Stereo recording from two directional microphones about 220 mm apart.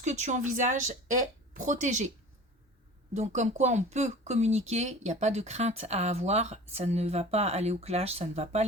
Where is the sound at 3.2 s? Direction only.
30° right (ahead or behind).